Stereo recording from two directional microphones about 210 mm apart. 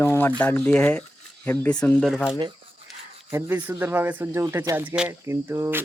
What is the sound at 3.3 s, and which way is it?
Speech, 10° right (ahead or behind).